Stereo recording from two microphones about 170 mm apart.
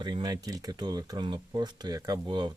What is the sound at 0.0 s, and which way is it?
Speech, 25° right (ahead or behind).